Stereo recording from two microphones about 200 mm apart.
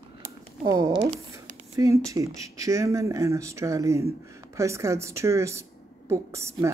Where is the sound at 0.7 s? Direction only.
20° right (ahead or behind).